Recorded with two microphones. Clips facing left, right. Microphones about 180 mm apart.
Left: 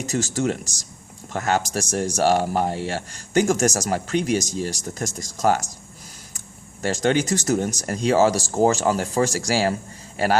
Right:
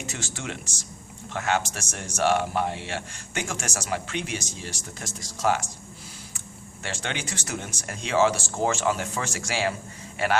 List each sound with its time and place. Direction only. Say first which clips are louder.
0.0 s speech: left 12 dB; 40° left (ahead or behind)
6.8 s speech: left 12 dB; 40° left (ahead or behind)